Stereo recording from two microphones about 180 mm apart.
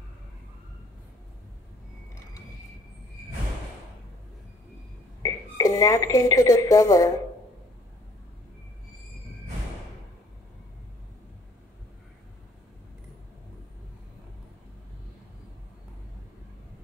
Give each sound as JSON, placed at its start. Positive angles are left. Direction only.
{"t": 5.2, "sound": "a woman's voice", "side_deg": 20}